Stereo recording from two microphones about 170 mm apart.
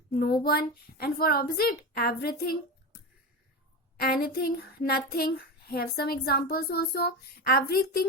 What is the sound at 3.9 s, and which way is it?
A woman's voice, 65° left (ahead or behind).